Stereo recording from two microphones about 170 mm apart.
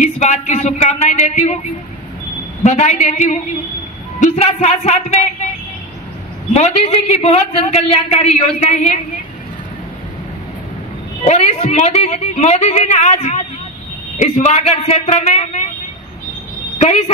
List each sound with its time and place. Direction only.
0.0 s a man's voice: 45° left (ahead or behind)
6.5 s a man's voice: 40° left (ahead or behind)
11.2 s a man's voice: 40° left (ahead or behind)
16.7 s a woman's voice: 45° left (ahead or behind)